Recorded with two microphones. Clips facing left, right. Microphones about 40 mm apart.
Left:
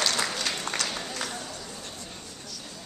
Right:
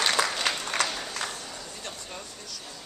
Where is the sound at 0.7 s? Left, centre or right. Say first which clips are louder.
Right 5 dB; centre.